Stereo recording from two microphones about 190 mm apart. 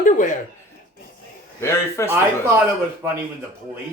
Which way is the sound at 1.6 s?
15° left (ahead or behind).